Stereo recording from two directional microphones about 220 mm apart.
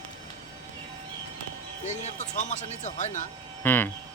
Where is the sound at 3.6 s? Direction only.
10° left (ahead or behind).